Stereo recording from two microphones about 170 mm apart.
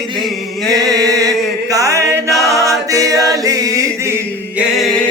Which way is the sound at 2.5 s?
20° right (ahead or behind).